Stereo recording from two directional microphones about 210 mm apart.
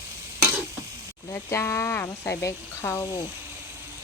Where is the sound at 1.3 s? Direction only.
15° left (ahead or behind).